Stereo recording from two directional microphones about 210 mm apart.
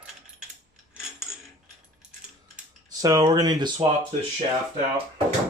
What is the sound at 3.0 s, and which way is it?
Speech, 15° right (ahead or behind).